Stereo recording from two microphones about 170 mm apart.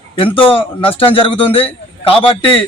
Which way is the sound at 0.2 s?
30° left (ahead or behind).